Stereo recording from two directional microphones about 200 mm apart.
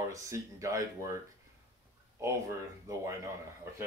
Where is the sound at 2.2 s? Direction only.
15° right (ahead or behind).